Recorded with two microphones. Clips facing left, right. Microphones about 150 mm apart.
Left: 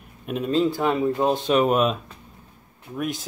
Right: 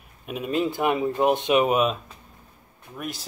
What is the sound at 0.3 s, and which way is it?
Speech, 5° right (ahead or behind).